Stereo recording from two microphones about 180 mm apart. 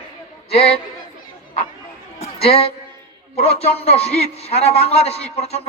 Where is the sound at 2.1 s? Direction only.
35° left (ahead or behind).